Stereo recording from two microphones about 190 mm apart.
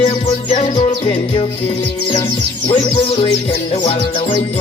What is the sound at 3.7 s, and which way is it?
Music, 30° left (ahead or behind).